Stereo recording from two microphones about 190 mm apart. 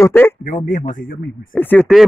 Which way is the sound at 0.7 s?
40° left (ahead or behind).